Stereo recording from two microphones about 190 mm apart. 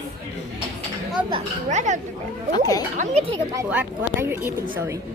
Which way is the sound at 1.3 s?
40° right (ahead or behind).